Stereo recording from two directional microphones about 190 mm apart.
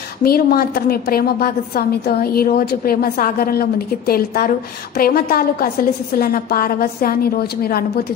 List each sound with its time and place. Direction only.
0.2 s a woman's voice: 50° left (ahead or behind)